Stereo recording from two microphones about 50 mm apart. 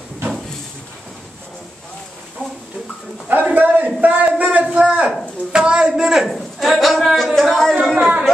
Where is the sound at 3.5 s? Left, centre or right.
Right; by 6.7 s centre.